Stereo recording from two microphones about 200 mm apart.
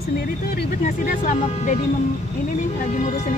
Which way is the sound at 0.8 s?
40° left (ahead or behind).